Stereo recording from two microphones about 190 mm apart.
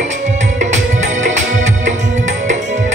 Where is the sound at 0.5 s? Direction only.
40° right (ahead or behind).